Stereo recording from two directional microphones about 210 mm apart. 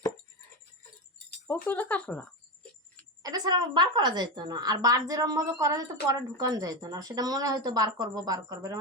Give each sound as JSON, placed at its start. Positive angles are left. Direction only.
{"t": 1.6, "sound": "speech", "side_deg": 5}
{"t": 3.2, "sound": "speech", "side_deg": -20}